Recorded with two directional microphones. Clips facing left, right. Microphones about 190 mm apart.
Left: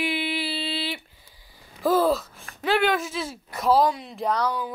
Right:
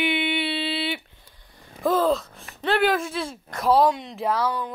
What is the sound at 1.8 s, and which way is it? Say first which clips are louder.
Speech: even; 5° left (ahead or behind).